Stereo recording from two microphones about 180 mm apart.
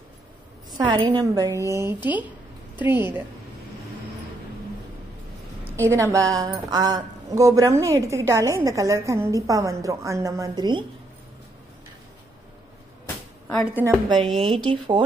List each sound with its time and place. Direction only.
0.7 s a woman's voice: 25° right (ahead or behind)
5.8 s a woman's voice: 15° right (ahead or behind)
14.2 s speech: centre (ahead or behind)
14.5 s a woman's voice: 25° right (ahead or behind)